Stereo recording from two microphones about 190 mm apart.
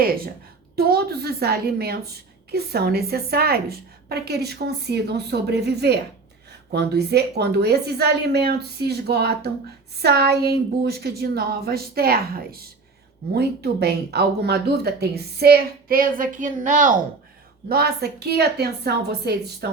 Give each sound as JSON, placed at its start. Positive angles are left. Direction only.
{"t": 0.8, "sound": "speech", "side_deg": -55}
{"t": 17.7, "sound": "speech", "side_deg": -55}